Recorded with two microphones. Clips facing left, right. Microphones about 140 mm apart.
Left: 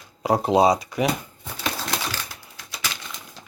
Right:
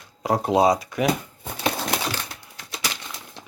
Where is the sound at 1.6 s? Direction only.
20° right (ahead or behind).